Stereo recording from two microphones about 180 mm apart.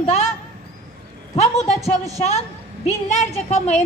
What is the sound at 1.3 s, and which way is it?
Speech, 35° left (ahead or behind).